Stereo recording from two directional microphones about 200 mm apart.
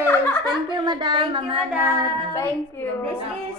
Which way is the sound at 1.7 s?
10° right (ahead or behind).